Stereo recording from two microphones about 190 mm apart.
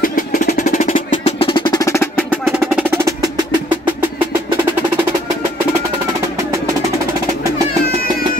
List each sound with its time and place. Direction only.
0.0 s percussion: 45° left (ahead or behind)
1.4 s percussion: 25° left (ahead or behind)